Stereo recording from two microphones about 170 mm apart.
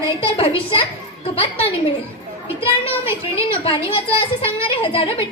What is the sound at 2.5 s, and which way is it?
A woman's voice, 35° left (ahead or behind).